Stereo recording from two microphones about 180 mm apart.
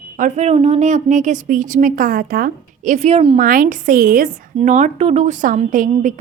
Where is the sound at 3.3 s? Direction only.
50° right (ahead or behind).